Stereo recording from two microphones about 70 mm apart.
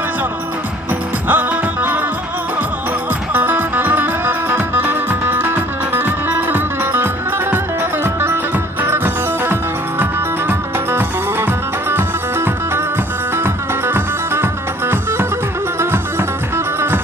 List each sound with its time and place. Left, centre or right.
1.3 s music: right
3.3 s music: right